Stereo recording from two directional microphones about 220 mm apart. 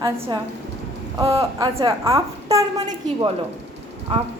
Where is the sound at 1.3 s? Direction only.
15° right (ahead or behind).